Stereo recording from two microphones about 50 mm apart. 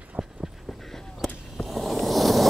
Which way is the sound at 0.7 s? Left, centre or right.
Centre.